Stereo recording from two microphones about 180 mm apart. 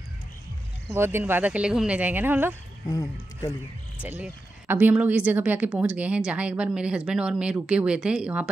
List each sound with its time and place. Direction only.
0.9 s speech: 15° right (ahead or behind)
2.9 s speech: 20° left (ahead or behind)
4.0 s speech: 10° right (ahead or behind)